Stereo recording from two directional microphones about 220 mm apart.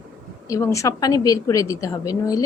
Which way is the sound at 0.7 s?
15° left (ahead or behind).